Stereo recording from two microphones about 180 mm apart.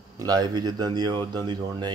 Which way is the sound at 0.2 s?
20° right (ahead or behind).